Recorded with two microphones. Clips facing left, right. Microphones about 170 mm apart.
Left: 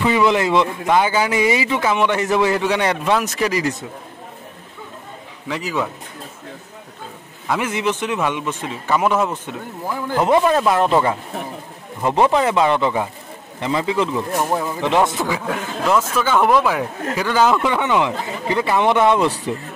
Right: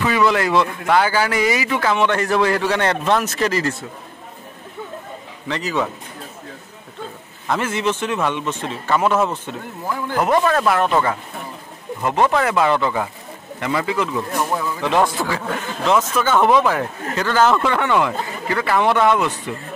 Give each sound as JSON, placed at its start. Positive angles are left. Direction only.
{"t": 0.2, "sound": "a man's voice", "side_deg": 20}
{"t": 5.5, "sound": "a man's voice", "side_deg": 10}
{"t": 7.4, "sound": "a man's voice", "side_deg": 10}
{"t": 12.3, "sound": "a man's voice", "side_deg": 20}